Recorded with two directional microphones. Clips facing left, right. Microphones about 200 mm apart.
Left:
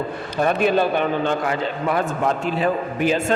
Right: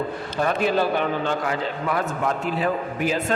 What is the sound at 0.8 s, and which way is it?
A man's voice, 20° left (ahead or behind).